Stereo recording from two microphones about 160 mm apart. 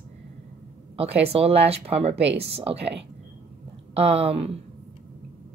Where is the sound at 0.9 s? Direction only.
40° right (ahead or behind).